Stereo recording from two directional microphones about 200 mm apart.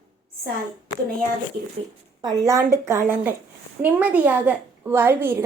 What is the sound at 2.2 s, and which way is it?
A woman's voice, 20° right (ahead or behind).